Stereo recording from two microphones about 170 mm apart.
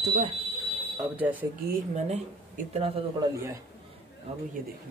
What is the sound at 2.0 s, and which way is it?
Speech, 40° right (ahead or behind).